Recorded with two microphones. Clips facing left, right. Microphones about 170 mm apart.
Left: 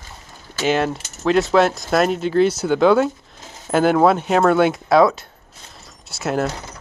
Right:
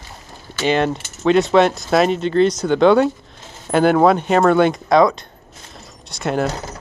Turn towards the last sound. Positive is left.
turn(degrees=0)  # may be behind; listen again after turning